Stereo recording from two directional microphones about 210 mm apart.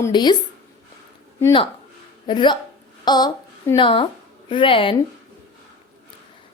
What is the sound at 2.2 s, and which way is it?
A woman's voice, 20° left (ahead or behind).